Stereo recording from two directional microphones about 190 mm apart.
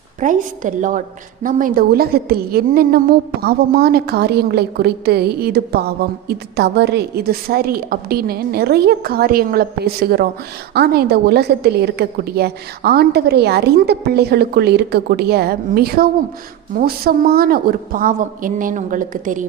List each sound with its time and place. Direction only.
0.2 s a woman's voice: 45° right (ahead or behind)